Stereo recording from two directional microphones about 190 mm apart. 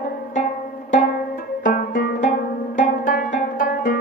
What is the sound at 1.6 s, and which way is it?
Music, 45° left (ahead or behind).